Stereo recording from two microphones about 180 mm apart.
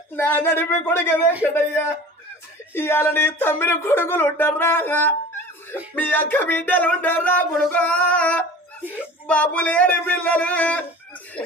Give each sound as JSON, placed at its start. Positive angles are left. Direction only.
{"t": 0.2, "sound": "speech", "side_deg": 10}
{"t": 11.4, "sound": "speech", "side_deg": 30}